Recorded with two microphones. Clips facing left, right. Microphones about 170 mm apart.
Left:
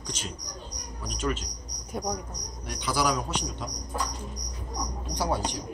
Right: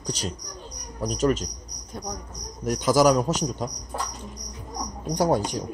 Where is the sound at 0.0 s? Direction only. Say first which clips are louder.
Right 6 dB; 40° right (ahead or behind).